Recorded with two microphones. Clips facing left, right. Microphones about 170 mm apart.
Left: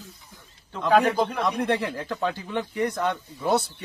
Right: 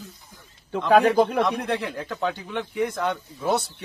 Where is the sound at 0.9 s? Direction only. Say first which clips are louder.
Right 3 dB; 60° right (ahead or behind).